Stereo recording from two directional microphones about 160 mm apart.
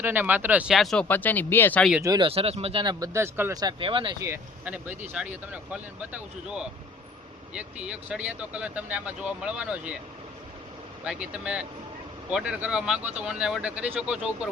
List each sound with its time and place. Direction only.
0.0 s speech: 10° right (ahead or behind); by 1.9 s 10° left (ahead or behind)
2.0 s speech: 20° right (ahead or behind)
2.2 s speech: 35° right (ahead or behind)
3.0 s speech: 15° right (ahead or behind)
3.6 s speech: 30° right (ahead or behind)
4.3 s speech: 10° right (ahead or behind)
11.0 s speech: 5° right (ahead or behind)